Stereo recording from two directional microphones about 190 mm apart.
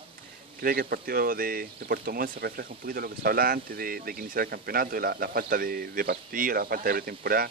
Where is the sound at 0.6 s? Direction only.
50° right (ahead or behind).